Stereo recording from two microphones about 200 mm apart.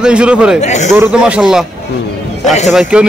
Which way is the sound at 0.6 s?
35° left (ahead or behind).